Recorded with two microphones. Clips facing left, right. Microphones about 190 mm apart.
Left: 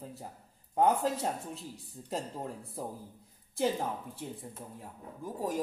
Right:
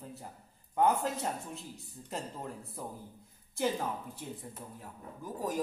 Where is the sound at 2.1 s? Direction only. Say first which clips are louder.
Left 3 dB; 35° left (ahead or behind).